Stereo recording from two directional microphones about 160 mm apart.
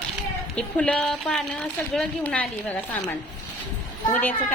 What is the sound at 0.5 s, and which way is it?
Speech, 5° left (ahead or behind).